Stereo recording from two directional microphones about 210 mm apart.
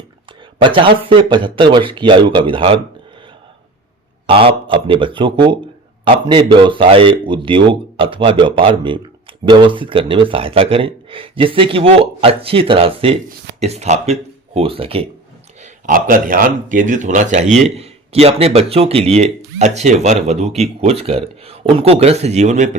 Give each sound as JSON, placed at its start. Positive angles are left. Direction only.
{"t": 0.6, "sound": "speech", "side_deg": -25}
{"t": 4.3, "sound": "speech", "side_deg": -25}
{"t": 15.6, "sound": "speech", "side_deg": -40}